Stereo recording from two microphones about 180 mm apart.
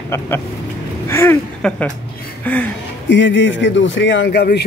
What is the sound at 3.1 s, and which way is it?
Speech, 90° left.